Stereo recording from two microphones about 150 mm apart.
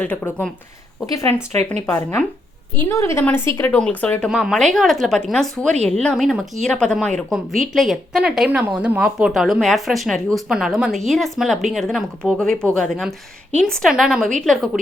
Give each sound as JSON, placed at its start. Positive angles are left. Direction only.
{"t": 0.0, "sound": "a woman's voice", "side_deg": 10}
{"t": 1.0, "sound": "a woman's voice", "side_deg": 25}